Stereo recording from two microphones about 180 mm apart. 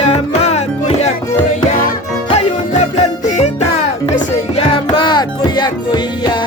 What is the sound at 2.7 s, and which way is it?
Music, 40° left (ahead or behind).